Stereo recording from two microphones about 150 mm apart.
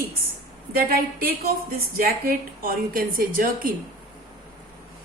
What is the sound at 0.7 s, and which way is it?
A woman's voice, 80° right.